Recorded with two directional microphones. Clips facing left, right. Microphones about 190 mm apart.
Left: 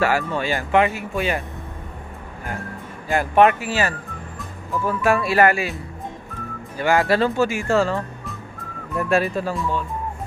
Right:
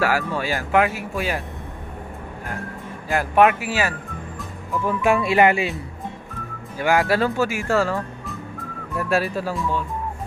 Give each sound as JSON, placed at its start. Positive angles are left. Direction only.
{"t": 0.0, "sound": "speech", "side_deg": -5}
{"t": 3.1, "sound": "speech", "side_deg": 0}
{"t": 6.8, "sound": "speech", "side_deg": -10}